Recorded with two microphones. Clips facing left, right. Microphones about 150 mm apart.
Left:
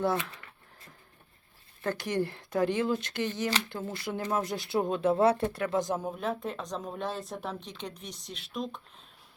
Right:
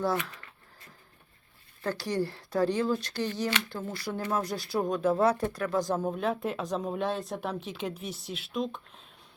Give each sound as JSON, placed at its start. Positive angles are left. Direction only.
{"t": 0.0, "sound": "speech", "side_deg": 25}
{"t": 1.8, "sound": "speech", "side_deg": 20}
{"t": 3.6, "sound": "speech", "side_deg": 35}
{"t": 3.9, "sound": "speech", "side_deg": 20}
{"t": 6.0, "sound": "speech", "side_deg": 0}